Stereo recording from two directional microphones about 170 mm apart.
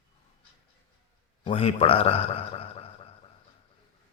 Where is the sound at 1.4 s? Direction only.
35° left (ahead or behind).